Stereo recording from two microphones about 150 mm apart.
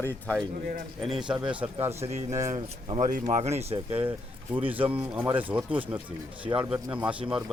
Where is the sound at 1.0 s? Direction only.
5° right (ahead or behind).